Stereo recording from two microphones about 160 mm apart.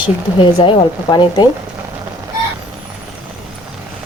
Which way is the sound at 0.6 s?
30° left (ahead or behind).